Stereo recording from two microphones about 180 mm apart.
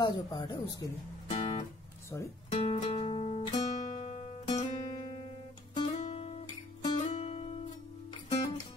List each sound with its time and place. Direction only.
0.0 s speech: 25° left (ahead or behind)
1.3 s music: 30° left (ahead or behind)
2.1 s speech: 15° left (ahead or behind)
2.5 s music: 35° left (ahead or behind)